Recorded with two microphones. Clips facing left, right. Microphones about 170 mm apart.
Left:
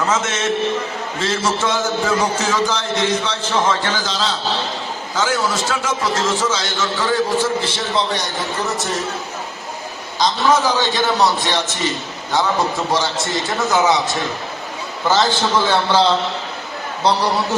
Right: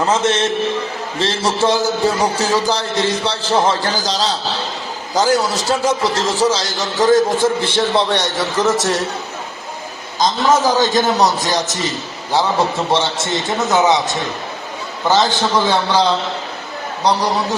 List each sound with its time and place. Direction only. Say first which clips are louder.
0.1 s a man's voice: right 3 dB; 30° right (ahead or behind); by 9.0 s 80° right
10.2 s a man's voice: right 2 dB; 45° right (ahead or behind)
12.9 s a man's voice: right 2 dB; 25° right (ahead or behind)
15.0 s a man's voice: right 2 dB; 15° right (ahead or behind)